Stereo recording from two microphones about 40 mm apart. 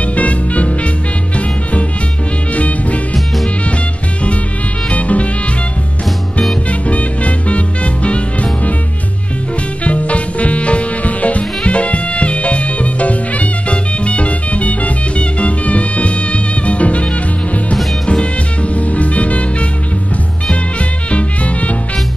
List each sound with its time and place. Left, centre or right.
0.0 s swing music: left
1.3 s music: left
4.8 s music: left
6.7 s music: left
9.8 s music: left
21.1 s music: left